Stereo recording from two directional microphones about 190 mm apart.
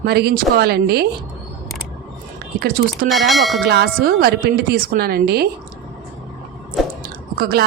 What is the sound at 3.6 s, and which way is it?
A woman's voice, 60° right (ahead or behind).